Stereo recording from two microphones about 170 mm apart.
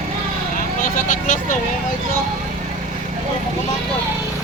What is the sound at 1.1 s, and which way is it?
Speech, 50° left (ahead or behind).